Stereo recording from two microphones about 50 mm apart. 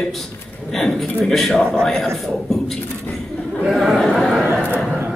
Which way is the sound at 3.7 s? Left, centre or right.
Centre.